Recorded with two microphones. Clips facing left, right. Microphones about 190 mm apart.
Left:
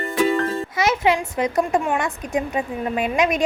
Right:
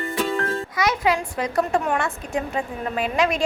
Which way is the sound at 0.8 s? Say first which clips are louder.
Left 3 dB; 25° left (ahead or behind).